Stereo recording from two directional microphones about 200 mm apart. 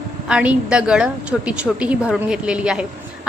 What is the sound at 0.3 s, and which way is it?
Speech, 5° right (ahead or behind).